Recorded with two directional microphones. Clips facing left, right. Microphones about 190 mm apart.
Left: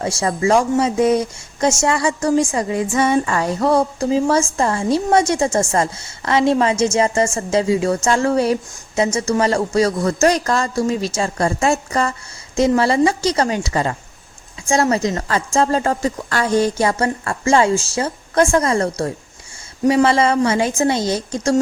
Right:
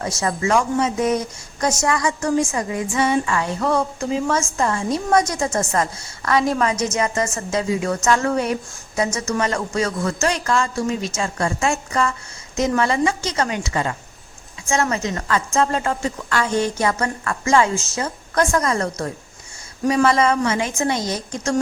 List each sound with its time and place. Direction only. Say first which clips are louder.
0.0 s a woman's voice: left 4 dB; 30° left (ahead or behind)
3.0 s a woman's voice: left 2 dB; 45° left (ahead or behind)